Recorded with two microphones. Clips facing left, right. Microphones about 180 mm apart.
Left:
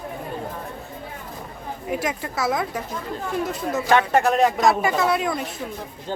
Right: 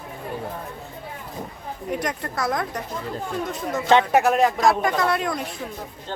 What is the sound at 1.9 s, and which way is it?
Speech, 5° left (ahead or behind).